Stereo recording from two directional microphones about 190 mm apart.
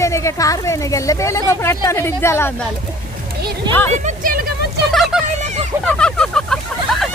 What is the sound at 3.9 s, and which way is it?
Speech, 45° right (ahead or behind).